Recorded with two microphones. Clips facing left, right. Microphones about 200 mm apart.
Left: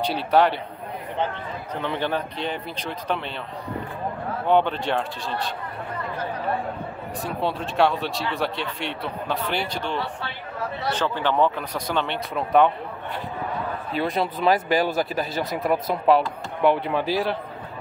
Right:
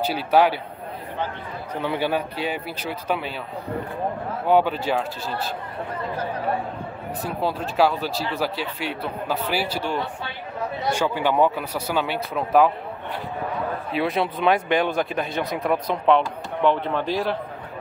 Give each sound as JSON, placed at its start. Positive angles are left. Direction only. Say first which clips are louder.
{"t": 0.0, "sound": "speech", "louder": "right 1 dB", "side_deg": -5}
{"t": 1.8, "sound": "speech", "louder": "right 2 dB", "side_deg": -10}
{"t": 4.5, "sound": "speech", "louder": "right 1 dB", "side_deg": -5}
{"t": 7.2, "sound": "speech", "louder": "right 1 dB", "side_deg": 0}
{"t": 13.9, "sound": "speech", "louder": "right 1 dB", "side_deg": 0}